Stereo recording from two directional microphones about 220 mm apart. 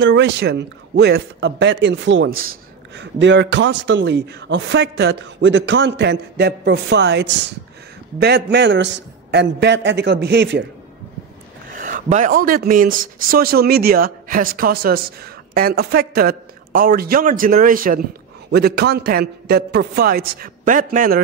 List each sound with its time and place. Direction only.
0.0 s a man's voice: 55° right (ahead or behind)
11.7 s a man's voice: 40° right (ahead or behind)